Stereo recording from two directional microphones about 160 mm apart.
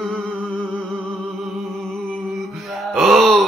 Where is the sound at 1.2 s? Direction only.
Centre (ahead or behind).